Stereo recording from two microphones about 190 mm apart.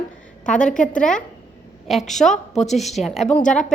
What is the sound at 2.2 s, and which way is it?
A woman's voice, centre (ahead or behind).